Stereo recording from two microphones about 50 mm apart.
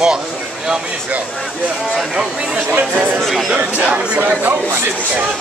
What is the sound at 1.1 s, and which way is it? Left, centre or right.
Speech, right.